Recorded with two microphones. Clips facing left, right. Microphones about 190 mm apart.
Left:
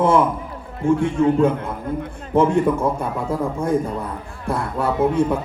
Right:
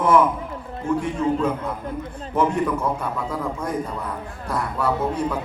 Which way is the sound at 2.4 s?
25° left (ahead or behind).